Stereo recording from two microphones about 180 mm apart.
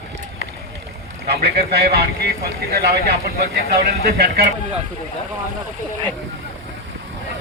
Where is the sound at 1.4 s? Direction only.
60° right (ahead or behind).